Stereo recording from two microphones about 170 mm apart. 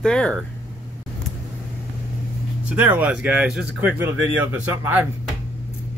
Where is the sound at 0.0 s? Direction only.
5° left (ahead or behind).